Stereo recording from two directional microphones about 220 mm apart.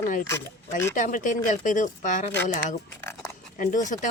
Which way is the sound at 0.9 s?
35° left (ahead or behind).